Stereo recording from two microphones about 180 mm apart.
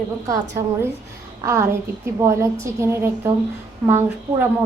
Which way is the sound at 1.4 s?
15° right (ahead or behind).